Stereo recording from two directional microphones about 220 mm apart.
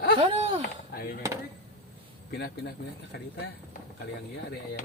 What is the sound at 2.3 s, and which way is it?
Speech, 45° left (ahead or behind).